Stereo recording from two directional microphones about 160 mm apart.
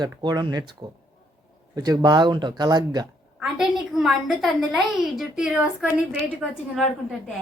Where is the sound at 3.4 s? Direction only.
5° right (ahead or behind).